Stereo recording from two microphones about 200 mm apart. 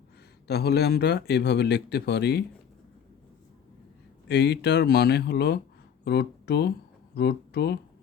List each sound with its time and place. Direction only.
0.4 s speech: 55° left (ahead or behind)
4.3 s speech: 55° left (ahead or behind)